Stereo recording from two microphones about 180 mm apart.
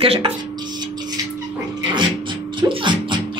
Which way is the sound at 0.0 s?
30° right (ahead or behind).